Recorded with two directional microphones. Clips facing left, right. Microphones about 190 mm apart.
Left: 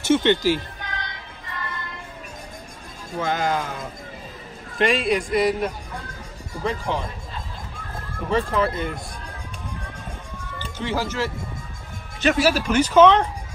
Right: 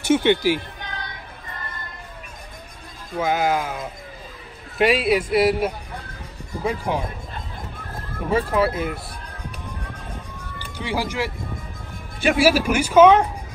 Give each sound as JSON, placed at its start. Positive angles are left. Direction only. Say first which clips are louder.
{"t": 0.0, "sound": "speech", "louder": "right 1 dB", "side_deg": -10}
{"t": 1.5, "sound": "a sound", "louder": "left 4 dB", "side_deg": -45}
{"t": 3.2, "sound": "speech", "louder": "right 3 dB", "side_deg": -10}
{"t": 8.3, "sound": "speech", "louder": "right 2 dB", "side_deg": -5}
{"t": 10.6, "sound": "speech", "louder": "even", "side_deg": -10}